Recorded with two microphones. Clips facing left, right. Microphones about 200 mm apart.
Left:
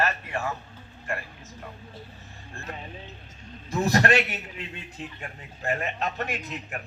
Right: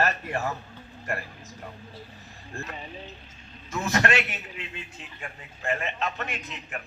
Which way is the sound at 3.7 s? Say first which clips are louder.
Left 3 dB; 35° left (ahead or behind).